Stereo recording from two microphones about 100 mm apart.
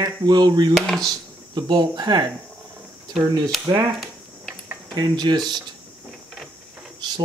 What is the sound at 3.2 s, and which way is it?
Speech, 40° right (ahead or behind).